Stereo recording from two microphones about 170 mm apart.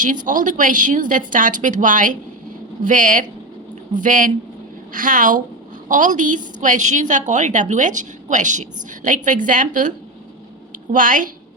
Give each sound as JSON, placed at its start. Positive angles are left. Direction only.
{"t": 0.0, "sound": "a woman's voice", "side_deg": -50}
{"t": 10.9, "sound": "a woman's voice", "side_deg": -50}